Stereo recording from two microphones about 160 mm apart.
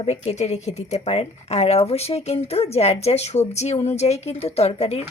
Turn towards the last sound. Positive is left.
turn(degrees=40)  # may be behind; listen again after turning